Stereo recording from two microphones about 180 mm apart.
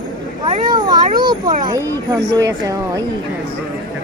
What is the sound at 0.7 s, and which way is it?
Speech, 25° right (ahead or behind).